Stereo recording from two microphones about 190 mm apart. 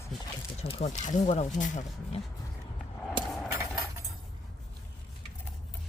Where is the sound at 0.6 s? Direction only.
35° left (ahead or behind).